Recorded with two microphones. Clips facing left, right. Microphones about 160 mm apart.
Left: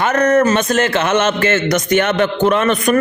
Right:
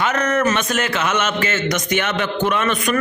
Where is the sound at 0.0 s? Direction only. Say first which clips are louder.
Left 6 dB; 45° left (ahead or behind).